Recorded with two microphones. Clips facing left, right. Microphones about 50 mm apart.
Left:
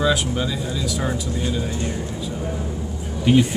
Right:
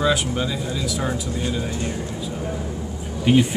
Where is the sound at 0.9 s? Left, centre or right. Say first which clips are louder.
Even; centre.